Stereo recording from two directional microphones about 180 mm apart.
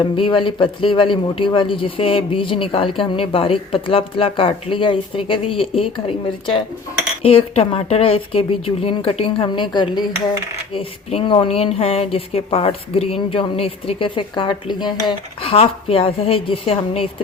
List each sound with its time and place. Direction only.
0.0 s a woman's voice: 25° left (ahead or behind)